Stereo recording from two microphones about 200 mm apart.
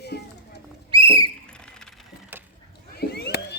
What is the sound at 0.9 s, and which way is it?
Rodents, 25° right (ahead or behind).